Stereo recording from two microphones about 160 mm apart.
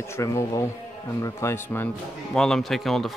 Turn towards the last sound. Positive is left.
turn(degrees=0)  # may be behind; listen again after turning